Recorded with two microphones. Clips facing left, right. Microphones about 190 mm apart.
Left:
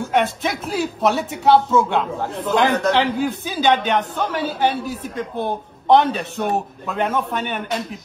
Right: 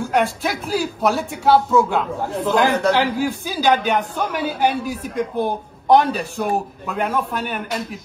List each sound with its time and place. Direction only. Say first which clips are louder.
0.1 s a man's voice: left 1 dB; centre (ahead or behind)